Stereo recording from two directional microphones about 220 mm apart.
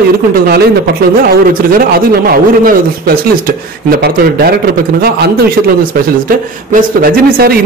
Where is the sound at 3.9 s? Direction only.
45° right (ahead or behind).